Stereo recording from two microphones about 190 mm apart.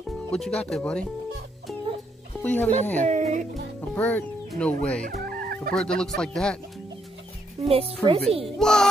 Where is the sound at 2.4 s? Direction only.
10° left (ahead or behind).